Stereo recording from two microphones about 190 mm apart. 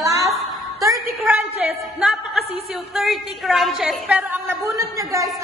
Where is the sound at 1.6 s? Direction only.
5° right (ahead or behind).